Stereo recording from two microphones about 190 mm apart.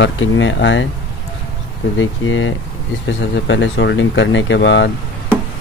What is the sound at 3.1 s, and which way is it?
Speech, 70° left (ahead or behind).